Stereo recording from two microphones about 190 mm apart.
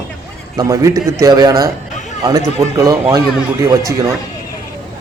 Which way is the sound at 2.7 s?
20° right (ahead or behind).